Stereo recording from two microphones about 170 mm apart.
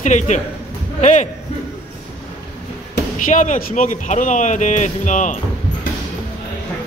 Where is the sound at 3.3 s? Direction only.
45° left (ahead or behind).